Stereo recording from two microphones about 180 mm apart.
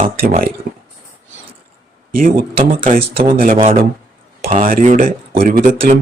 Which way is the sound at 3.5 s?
35° right (ahead or behind).